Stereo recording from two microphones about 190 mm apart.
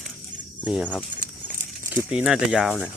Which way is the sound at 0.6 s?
5° right (ahead or behind).